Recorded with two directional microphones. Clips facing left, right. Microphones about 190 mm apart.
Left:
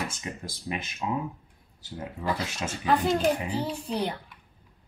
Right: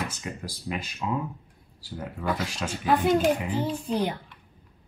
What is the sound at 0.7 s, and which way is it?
Speech, 15° left (ahead or behind).